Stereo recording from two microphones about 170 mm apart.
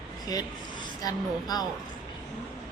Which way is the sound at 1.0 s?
20° left (ahead or behind).